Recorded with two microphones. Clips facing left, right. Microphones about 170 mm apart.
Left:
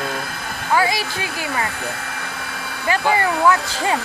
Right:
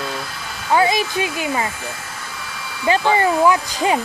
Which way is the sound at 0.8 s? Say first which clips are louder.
Right 4 dB; 20° right (ahead or behind).